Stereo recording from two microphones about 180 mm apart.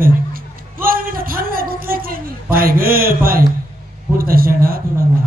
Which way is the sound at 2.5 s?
55° right (ahead or behind).